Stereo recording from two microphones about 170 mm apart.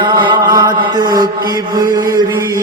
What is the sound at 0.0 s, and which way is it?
Mantra, 25° right (ahead or behind).